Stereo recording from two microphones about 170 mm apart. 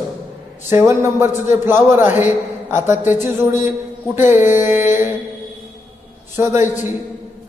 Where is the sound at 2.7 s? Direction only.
45° left (ahead or behind).